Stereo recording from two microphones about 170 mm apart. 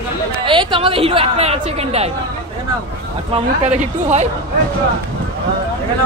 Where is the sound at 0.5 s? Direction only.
30° right (ahead or behind).